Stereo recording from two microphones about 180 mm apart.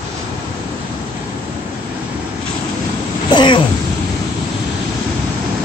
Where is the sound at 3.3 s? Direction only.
25° left (ahead or behind).